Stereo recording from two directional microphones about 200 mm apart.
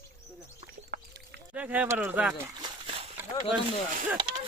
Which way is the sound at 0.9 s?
50° right (ahead or behind).